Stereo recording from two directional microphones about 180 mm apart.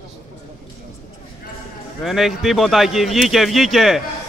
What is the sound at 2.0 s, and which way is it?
Speech, centre (ahead or behind).